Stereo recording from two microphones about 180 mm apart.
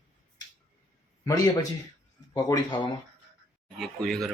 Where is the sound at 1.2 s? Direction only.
20° left (ahead or behind).